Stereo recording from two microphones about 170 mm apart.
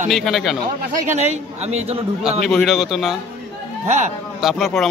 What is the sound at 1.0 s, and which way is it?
Speech, 45° right (ahead or behind).